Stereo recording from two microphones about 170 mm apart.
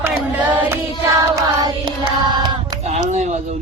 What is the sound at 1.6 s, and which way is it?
Carnatic music, 25° right (ahead or behind).